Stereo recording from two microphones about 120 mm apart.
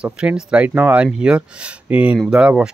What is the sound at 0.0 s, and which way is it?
Speech, 10° right (ahead or behind).